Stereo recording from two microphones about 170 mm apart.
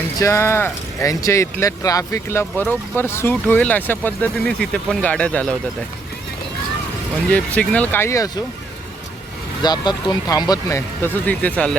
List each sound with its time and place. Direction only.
0.2 s speech: 15° left (ahead or behind)
7.3 s speech: 10° left (ahead or behind)
9.6 s speech: 25° left (ahead or behind); by 11.8 s 5° left (ahead or behind)